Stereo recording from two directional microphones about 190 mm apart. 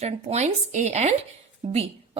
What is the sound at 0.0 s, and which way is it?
A woman's voice, 35° right (ahead or behind).